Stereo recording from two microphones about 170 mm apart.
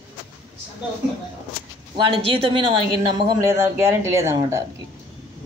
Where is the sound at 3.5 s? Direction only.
15° right (ahead or behind).